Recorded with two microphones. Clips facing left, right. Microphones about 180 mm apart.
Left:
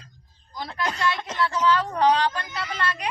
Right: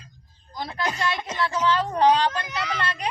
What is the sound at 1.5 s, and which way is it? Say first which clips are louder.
Speech: even; 25° right (ahead or behind).